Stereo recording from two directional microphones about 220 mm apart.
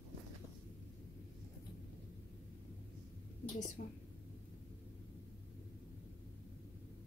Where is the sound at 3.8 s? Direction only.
45° left (ahead or behind).